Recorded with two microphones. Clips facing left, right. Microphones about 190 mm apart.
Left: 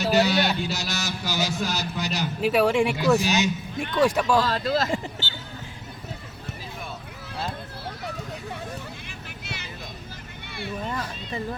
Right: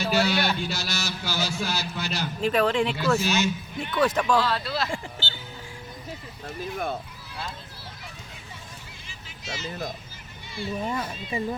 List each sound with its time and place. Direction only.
0.0 s a man's voice: 20° left (ahead or behind)
4.4 s speech: 40° left (ahead or behind)
5.2 s a sound: 15° left (ahead or behind)
9.0 s vehicle: 60° left (ahead or behind)
10.8 s speech: 10° right (ahead or behind)